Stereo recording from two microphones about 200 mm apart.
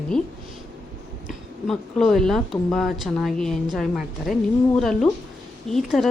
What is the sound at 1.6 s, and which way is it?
Speech, centre (ahead or behind).